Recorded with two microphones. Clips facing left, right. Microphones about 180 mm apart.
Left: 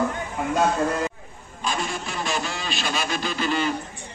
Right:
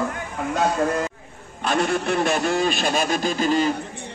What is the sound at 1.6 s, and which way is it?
A man's voice, 65° right (ahead or behind).